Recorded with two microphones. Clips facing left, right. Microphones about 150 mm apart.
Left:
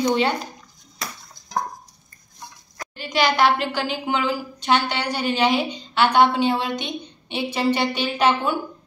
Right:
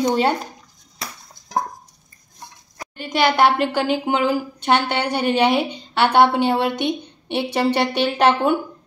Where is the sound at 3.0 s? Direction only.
55° right (ahead or behind).